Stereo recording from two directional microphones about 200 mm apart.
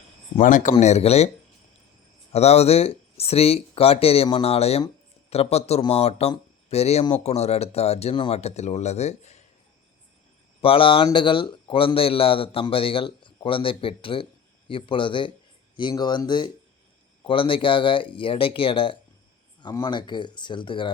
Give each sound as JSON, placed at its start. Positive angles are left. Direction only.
{"t": 0.3, "sound": "speech", "side_deg": 40}
{"t": 2.3, "sound": "speech", "side_deg": 30}
{"t": 10.6, "sound": "a man's voice", "side_deg": 25}